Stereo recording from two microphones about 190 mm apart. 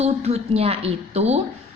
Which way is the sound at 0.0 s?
35° right (ahead or behind).